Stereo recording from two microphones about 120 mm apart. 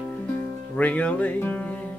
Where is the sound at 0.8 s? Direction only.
10° left (ahead or behind).